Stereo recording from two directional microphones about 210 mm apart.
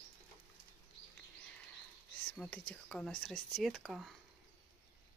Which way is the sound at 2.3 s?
5° left (ahead or behind).